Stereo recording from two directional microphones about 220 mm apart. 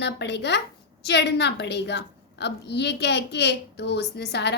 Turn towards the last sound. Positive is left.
turn(degrees=50)  # may be behind; listen again after turning